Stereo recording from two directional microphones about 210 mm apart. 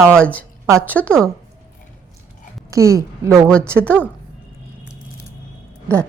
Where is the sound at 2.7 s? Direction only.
15° right (ahead or behind).